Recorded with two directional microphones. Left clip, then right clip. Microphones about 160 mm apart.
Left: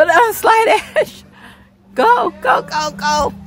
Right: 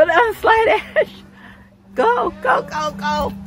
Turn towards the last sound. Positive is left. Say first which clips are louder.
# left 4 dB
turn(degrees=35)  # may be behind; listen again after turning